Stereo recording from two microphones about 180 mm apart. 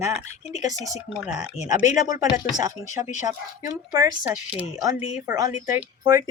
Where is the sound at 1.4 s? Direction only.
40° left (ahead or behind).